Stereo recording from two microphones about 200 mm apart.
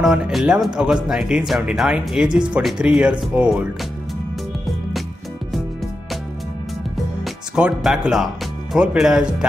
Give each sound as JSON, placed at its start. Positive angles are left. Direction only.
{"t": 0.0, "sound": "speech", "side_deg": 0}
{"t": 7.2, "sound": "speech", "side_deg": -5}